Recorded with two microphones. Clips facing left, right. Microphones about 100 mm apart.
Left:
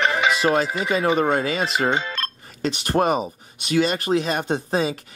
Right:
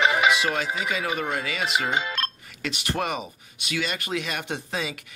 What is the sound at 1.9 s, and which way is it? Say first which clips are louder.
Music: left 2 dB; 5° right (ahead or behind).